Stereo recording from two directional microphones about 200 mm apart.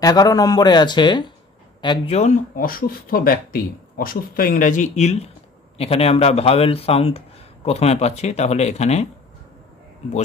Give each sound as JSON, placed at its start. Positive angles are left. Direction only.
{"t": 0.0, "sound": "speech", "side_deg": 20}